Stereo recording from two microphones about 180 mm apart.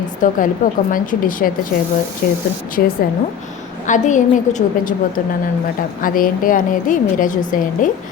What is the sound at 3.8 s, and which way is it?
A woman's voice, 45° left (ahead or behind).